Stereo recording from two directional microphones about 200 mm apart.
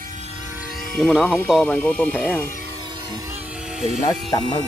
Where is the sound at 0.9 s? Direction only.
5° left (ahead or behind).